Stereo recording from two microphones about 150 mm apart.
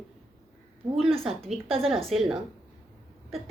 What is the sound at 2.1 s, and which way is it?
Speech, 5° right (ahead or behind).